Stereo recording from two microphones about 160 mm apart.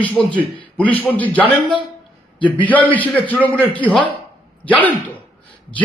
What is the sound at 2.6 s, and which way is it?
A man's voice, 10° left (ahead or behind).